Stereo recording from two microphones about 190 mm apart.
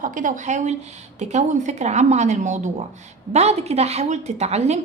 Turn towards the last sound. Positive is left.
turn(degrees=-35)  # may be behind; listen again after turning